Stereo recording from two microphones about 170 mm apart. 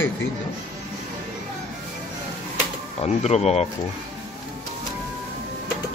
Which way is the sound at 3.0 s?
40° left (ahead or behind).